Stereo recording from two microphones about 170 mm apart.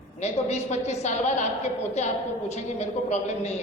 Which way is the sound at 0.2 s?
40° left (ahead or behind).